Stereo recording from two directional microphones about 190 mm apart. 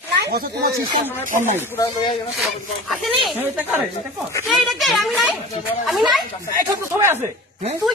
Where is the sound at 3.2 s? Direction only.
10° right (ahead or behind).